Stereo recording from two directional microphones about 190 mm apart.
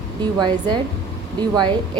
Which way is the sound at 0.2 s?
25° right (ahead or behind).